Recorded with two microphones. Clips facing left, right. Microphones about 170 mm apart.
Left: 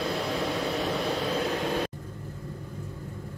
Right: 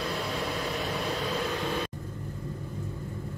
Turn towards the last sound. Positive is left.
turn(degrees=35)  # may be behind; listen again after turning